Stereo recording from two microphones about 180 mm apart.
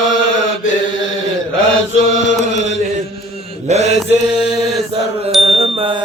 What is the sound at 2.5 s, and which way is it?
Chant, 85° left.